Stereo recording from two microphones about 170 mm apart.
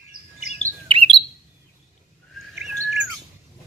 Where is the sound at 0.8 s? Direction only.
30° right (ahead or behind).